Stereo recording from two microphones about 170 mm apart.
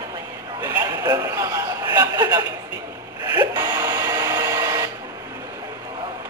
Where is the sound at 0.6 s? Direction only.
15° right (ahead or behind).